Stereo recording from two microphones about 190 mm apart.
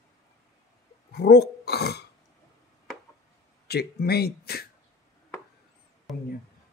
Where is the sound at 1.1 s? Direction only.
55° left (ahead or behind).